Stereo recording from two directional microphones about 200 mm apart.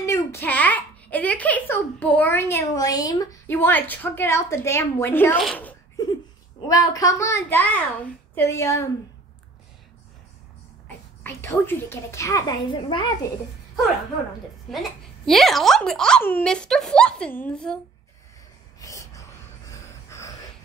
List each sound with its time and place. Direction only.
0.0 s a child's voice: 15° left (ahead or behind)
6.7 s a child's voice: 15° left (ahead or behind)
11.2 s a child's voice: 10° left (ahead or behind)
14.7 s a woman's voice: centre (ahead or behind)
18.8 s gasp: 15° left (ahead or behind)
19.7 s a sound: 15° left (ahead or behind)